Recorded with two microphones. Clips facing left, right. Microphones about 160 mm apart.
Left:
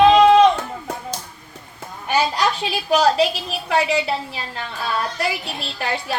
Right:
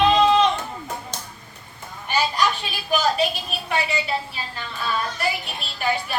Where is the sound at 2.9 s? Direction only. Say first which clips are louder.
Left 5 dB; 90° left.